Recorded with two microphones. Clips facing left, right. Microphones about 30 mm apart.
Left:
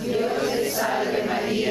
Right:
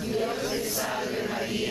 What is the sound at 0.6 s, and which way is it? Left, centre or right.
Chant, left.